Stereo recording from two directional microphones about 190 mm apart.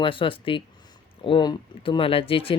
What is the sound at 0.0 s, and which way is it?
Speech, 25° left (ahead or behind).